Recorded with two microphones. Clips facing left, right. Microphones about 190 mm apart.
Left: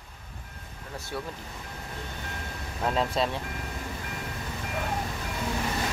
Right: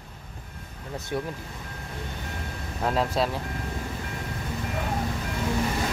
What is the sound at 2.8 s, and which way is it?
Speech, centre (ahead or behind).